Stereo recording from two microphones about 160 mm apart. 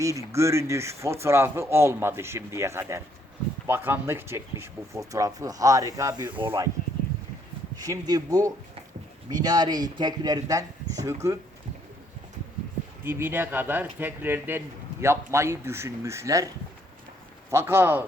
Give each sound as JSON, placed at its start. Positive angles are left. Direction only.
{"t": 0.0, "sound": "speech", "side_deg": -20}
{"t": 7.8, "sound": "speech", "side_deg": -20}
{"t": 13.1, "sound": "speech", "side_deg": -15}
{"t": 17.5, "sound": "speech", "side_deg": -15}